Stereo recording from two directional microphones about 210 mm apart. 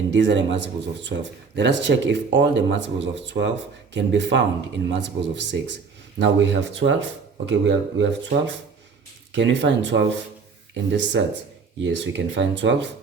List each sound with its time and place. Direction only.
0.1 s speech: 55° right (ahead or behind)